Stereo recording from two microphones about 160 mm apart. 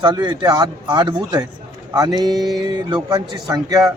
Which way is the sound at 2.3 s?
Centre (ahead or behind).